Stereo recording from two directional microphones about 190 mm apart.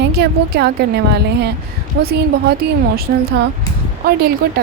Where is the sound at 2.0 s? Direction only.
55° right (ahead or behind).